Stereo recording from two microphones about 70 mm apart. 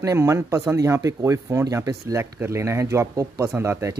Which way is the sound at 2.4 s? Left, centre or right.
Right.